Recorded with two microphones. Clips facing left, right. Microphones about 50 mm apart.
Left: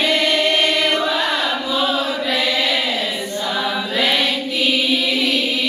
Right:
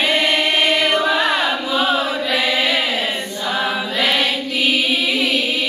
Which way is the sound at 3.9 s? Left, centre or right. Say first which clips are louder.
Left 1 dB; centre.